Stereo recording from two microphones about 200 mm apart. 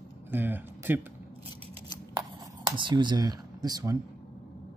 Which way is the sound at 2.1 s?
20° right (ahead or behind).